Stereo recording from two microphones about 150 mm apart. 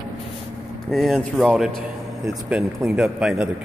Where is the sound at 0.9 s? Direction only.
Centre (ahead or behind).